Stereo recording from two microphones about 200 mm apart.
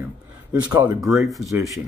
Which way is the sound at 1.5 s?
15° right (ahead or behind).